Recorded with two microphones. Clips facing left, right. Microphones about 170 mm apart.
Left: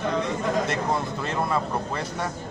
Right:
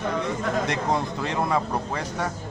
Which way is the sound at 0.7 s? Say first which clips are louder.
Right 1 dB; 15° right (ahead or behind).